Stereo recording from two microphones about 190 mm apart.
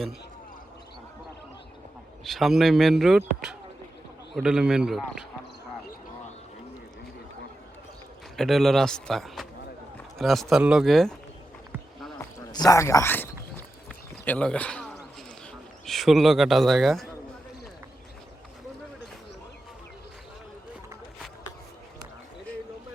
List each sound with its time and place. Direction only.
2.2 s a man's voice: centre (ahead or behind)
8.4 s a man's voice: centre (ahead or behind)
12.4 s speech: 20° left (ahead or behind)
14.3 s a man's voice: 5° left (ahead or behind)